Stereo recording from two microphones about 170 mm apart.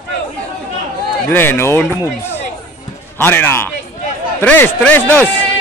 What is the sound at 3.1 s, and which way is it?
Speech, 10° left (ahead or behind).